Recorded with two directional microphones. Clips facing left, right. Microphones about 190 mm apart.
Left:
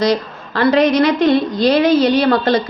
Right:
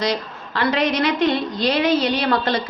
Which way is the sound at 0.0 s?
40° left (ahead or behind).